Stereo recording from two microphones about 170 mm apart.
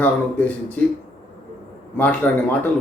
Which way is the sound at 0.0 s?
10° left (ahead or behind).